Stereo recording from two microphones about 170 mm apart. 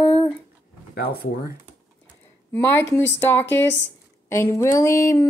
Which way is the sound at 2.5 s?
15° left (ahead or behind).